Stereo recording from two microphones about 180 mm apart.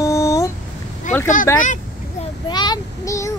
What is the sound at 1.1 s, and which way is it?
Vehicle, 40° left (ahead or behind).